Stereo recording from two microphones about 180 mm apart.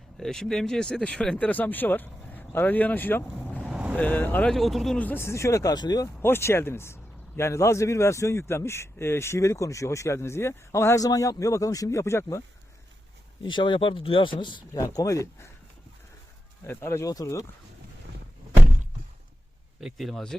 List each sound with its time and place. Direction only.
0.2 s speech: centre (ahead or behind)
3.7 s vehicle: 5° right (ahead or behind)
3.9 s speech: 10° left (ahead or behind)
13.4 s speech: 25° left (ahead or behind)
16.6 s speech: 15° left (ahead or behind)
19.8 s speech: centre (ahead or behind)